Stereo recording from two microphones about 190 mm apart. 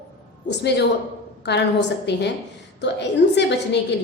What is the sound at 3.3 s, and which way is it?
Speech, 65° left (ahead or behind).